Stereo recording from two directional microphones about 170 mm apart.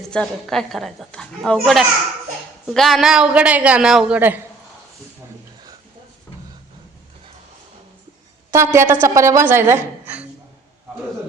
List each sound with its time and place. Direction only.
0.1 s a woman's voice: 5° left (ahead or behind)
8.4 s a woman's voice: 15° right (ahead or behind)